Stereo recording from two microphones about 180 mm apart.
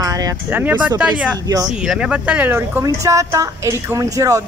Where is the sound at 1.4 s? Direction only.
20° right (ahead or behind).